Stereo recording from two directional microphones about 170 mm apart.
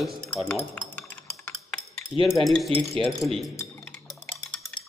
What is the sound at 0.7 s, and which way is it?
Music, 10° left (ahead or behind).